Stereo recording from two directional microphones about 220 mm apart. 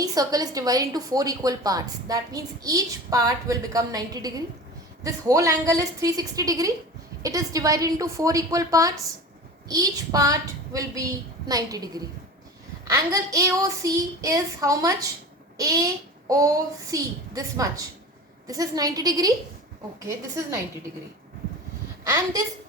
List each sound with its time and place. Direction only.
0.0 s speech: 15° right (ahead or behind)
22.0 s a woman's voice: 15° right (ahead or behind)